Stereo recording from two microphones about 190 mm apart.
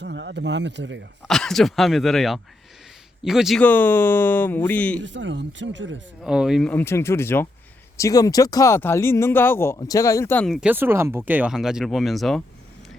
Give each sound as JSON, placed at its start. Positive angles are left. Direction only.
{"t": 0.0, "sound": "speech", "side_deg": -70}
{"t": 1.3, "sound": "speech", "side_deg": 0}
{"t": 5.0, "sound": "speech", "side_deg": -70}
{"t": 6.2, "sound": "speech", "side_deg": 0}